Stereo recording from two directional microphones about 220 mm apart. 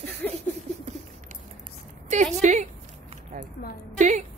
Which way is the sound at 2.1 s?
30° right (ahead or behind).